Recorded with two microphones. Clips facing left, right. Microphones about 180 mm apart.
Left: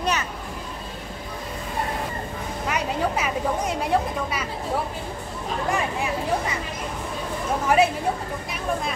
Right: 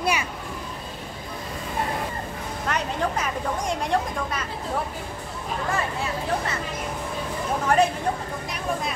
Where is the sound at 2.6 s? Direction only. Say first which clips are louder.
Left 1 dB; 10° left (ahead or behind).